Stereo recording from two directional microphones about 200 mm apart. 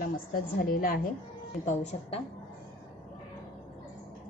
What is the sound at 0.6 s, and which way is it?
Speech, 45° left (ahead or behind).